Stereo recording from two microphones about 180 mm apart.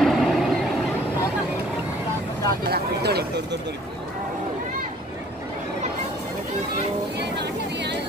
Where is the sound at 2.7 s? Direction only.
65° right (ahead or behind).